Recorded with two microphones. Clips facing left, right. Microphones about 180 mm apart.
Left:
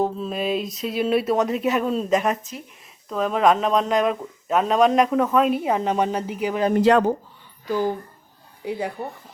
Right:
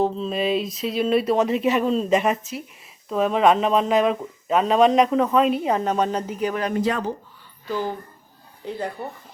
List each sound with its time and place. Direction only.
0.0 s speech: 5° left (ahead or behind)
6.7 s speech: 75° left (ahead or behind)
7.7 s speech: 15° left (ahead or behind)